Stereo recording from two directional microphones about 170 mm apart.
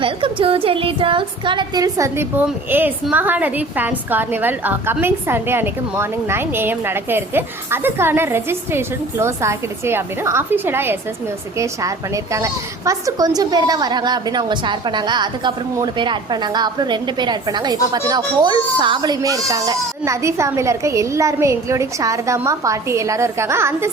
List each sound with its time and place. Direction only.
0.0 s a woman's voice: 30° right (ahead or behind); by 23.9 s 15° right (ahead or behind)